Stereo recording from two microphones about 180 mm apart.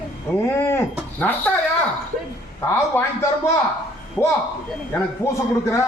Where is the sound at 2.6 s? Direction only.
15° left (ahead or behind).